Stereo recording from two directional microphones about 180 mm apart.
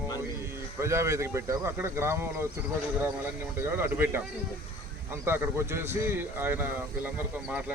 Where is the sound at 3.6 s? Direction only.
15° right (ahead or behind).